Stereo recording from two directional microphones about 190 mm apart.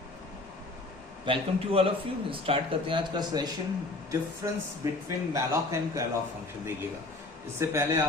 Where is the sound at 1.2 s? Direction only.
30° right (ahead or behind).